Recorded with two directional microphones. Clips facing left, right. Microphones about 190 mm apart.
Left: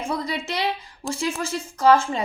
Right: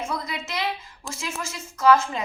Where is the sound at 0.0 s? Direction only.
30° left (ahead or behind).